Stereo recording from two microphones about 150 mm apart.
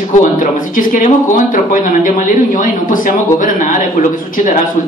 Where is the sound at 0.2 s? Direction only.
60° left (ahead or behind).